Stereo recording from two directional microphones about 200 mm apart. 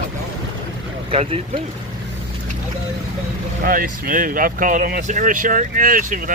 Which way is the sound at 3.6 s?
45° right (ahead or behind).